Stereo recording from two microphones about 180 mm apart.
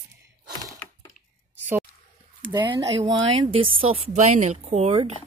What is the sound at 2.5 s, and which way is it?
A woman's voice, 25° right (ahead or behind).